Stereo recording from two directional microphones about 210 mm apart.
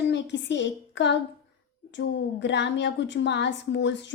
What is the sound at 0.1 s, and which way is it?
A woman's voice, 55° left (ahead or behind).